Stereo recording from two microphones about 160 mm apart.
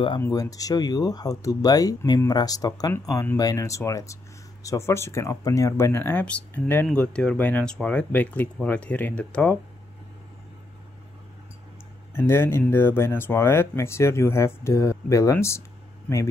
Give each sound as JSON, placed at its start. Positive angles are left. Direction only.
{"t": 0.2, "sound": "speech", "side_deg": 20}
{"t": 12.1, "sound": "speech", "side_deg": 15}